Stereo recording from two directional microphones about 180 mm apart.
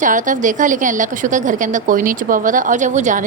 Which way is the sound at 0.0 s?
45° right (ahead or behind).